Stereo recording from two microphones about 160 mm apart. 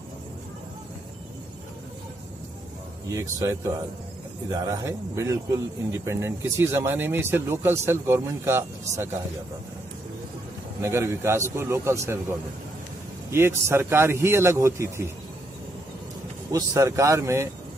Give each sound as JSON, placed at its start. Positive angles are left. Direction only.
{"t": 3.1, "sound": "speech", "side_deg": -20}
{"t": 10.8, "sound": "speech", "side_deg": -15}
{"t": 16.5, "sound": "speech", "side_deg": -20}